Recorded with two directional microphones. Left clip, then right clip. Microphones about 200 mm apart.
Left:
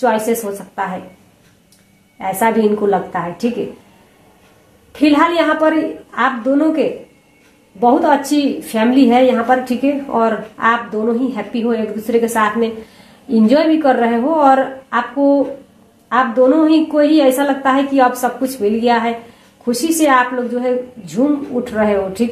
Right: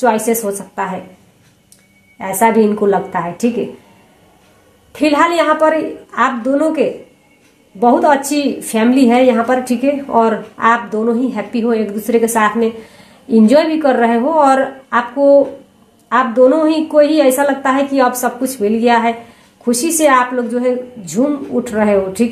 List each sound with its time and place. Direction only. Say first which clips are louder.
0.0 s a woman's voice: right 2 dB; 35° right (ahead or behind)
2.1 s a woman's voice: right 3 dB; 35° right (ahead or behind)
4.9 s a woman's voice: right 1 dB; 40° right (ahead or behind)